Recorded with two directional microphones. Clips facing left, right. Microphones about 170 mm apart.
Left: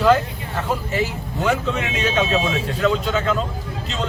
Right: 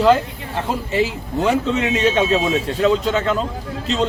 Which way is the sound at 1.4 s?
30° right (ahead or behind).